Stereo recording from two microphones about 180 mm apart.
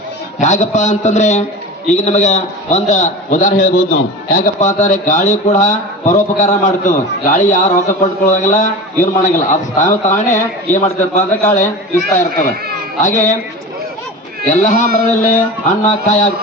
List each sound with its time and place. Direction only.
0.3 s a man's voice: 40° left (ahead or behind)
14.4 s a man's voice: 45° left (ahead or behind)